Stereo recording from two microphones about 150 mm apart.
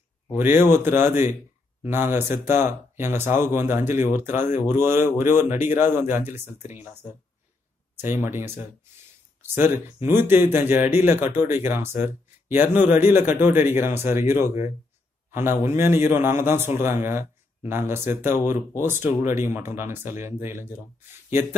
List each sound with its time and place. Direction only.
0.3 s speech: 15° right (ahead or behind)
4.4 s speech: 55° left (ahead or behind)
4.6 s speech: 15° right (ahead or behind)
9.5 s speech: 50° left (ahead or behind)
10.0 s speech: 15° right (ahead or behind)
15.6 s speech: 15° right (ahead or behind)